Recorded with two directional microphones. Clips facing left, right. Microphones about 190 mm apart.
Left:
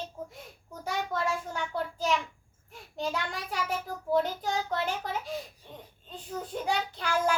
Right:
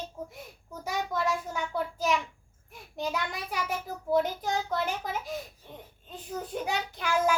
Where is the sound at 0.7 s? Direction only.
5° right (ahead or behind).